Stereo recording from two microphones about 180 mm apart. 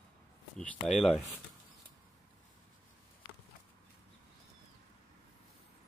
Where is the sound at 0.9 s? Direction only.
Centre (ahead or behind).